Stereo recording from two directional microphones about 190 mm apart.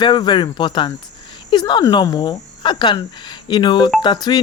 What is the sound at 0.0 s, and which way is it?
Speech, 25° left (ahead or behind).